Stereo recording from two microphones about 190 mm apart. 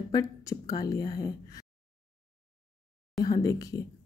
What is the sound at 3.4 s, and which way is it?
Speech, 20° left (ahead or behind).